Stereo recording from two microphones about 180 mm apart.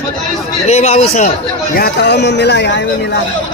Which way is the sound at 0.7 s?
35° left (ahead or behind).